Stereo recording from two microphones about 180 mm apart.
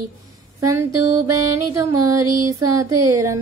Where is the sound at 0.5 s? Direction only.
15° right (ahead or behind).